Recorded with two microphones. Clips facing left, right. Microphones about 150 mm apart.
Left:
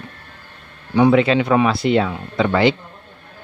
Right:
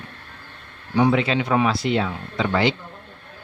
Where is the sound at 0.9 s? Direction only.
65° left (ahead or behind).